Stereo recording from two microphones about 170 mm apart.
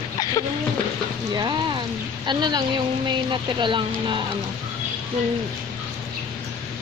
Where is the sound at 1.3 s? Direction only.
25° right (ahead or behind).